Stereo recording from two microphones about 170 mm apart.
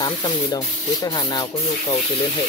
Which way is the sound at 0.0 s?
25° left (ahead or behind).